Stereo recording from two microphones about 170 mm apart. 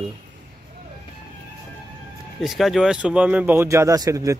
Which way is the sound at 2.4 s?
Centre (ahead or behind).